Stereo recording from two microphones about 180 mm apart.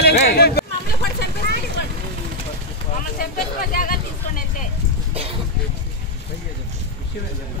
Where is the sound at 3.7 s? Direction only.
55° left (ahead or behind).